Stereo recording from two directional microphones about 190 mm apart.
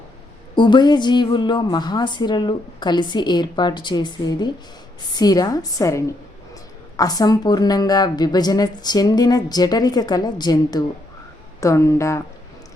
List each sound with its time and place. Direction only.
0.5 s a woman's voice: 25° left (ahead or behind)